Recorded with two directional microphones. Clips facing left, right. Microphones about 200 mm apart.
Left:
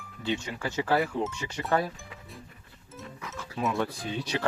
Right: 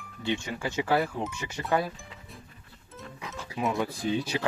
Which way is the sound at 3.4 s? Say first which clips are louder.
Even; 15° right (ahead or behind).